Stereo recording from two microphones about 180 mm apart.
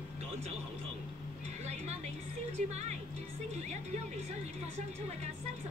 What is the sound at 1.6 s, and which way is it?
Music, 40° right (ahead or behind).